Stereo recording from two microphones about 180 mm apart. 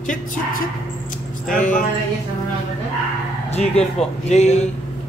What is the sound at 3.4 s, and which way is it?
Speech, 35° left (ahead or behind).